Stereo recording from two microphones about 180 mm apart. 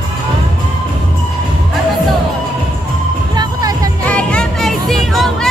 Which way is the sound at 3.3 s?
20° right (ahead or behind).